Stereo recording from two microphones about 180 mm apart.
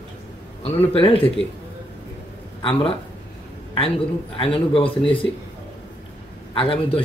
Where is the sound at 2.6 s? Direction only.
30° left (ahead or behind).